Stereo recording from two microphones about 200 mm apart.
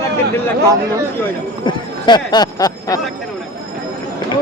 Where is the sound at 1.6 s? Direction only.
20° left (ahead or behind).